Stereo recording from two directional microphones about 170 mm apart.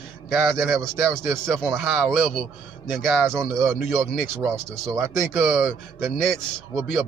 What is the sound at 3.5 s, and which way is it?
Speech, 15° right (ahead or behind).